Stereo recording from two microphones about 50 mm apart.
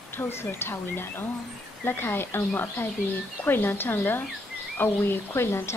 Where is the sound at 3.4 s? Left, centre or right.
Left.